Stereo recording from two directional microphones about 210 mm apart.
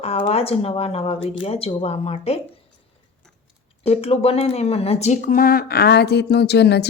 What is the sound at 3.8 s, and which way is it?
Speech, 30° left (ahead or behind).